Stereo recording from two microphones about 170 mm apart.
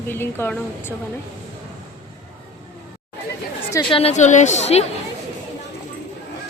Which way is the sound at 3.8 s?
35° left (ahead or behind).